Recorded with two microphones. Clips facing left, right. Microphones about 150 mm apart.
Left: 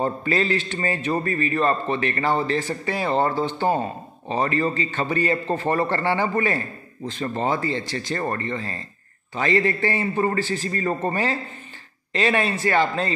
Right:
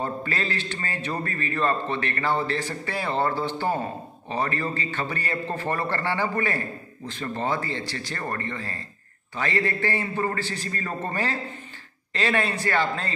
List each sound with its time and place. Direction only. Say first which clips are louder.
0.0 s a man's voice: left 6 dB; 15° left (ahead or behind)